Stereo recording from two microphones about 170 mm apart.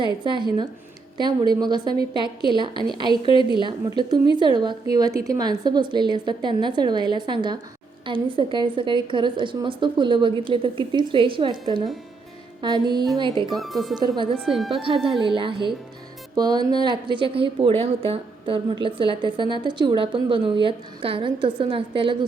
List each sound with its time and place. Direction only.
0.0 s a woman's voice: 25° right (ahead or behind)
13.6 s speech: centre (ahead or behind)
14.7 s a woman's voice: 30° right (ahead or behind)